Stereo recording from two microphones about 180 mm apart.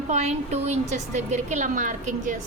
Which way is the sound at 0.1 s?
35° right (ahead or behind).